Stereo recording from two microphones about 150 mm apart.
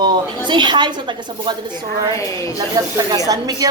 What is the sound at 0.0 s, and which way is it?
A woman's voice, 30° right (ahead or behind).